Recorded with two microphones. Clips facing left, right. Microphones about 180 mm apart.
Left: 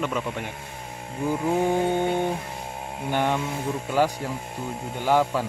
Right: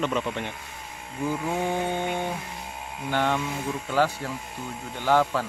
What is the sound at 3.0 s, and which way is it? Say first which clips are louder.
Speech: left 1 dB; 15° left (ahead or behind).